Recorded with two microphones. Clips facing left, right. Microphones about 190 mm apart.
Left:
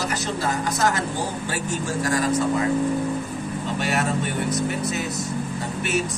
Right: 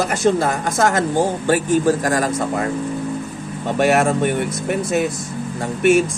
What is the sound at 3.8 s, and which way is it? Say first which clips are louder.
A woman's voice: right 10 dB; 50° right (ahead or behind).